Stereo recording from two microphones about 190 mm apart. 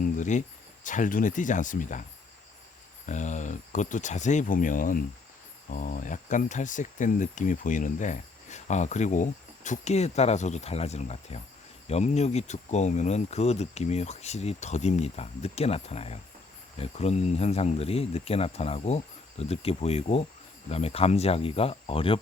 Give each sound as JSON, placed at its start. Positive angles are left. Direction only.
{"t": 0.0, "sound": "cricket", "side_deg": 40}
{"t": 0.9, "sound": "speech", "side_deg": 40}
{"t": 3.1, "sound": "speech", "side_deg": 40}